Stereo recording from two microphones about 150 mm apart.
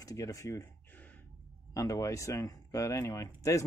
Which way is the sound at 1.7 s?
20° left (ahead or behind).